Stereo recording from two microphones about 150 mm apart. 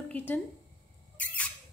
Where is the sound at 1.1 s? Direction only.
10° left (ahead or behind).